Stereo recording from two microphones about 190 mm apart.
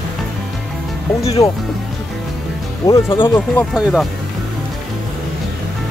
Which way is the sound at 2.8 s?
15° left (ahead or behind).